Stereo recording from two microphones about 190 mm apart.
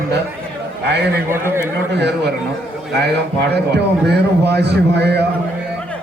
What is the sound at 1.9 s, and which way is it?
Speech, 60° right (ahead or behind).